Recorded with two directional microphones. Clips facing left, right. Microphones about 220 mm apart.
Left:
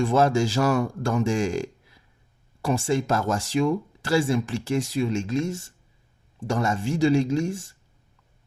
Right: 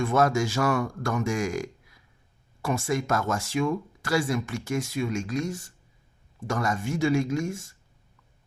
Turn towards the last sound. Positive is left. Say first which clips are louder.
# left 4 dB
turn(degrees=30)  # may be behind; listen again after turning